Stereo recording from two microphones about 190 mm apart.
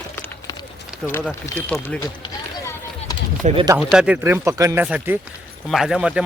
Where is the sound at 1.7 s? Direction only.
15° left (ahead or behind).